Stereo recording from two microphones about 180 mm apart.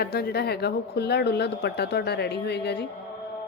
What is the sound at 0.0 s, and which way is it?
A woman's voice, 60° left (ahead or behind).